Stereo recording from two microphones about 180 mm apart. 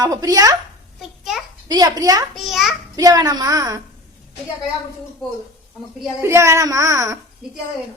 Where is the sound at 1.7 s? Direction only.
20° right (ahead or behind).